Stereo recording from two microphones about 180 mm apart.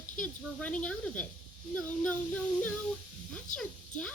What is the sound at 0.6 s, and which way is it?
A child's voice, 5° left (ahead or behind).